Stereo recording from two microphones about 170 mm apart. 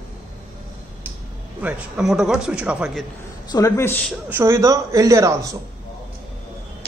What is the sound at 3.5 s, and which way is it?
Speech, 15° left (ahead or behind).